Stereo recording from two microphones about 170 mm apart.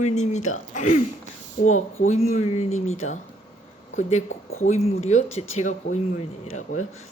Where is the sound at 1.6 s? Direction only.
55° left (ahead or behind).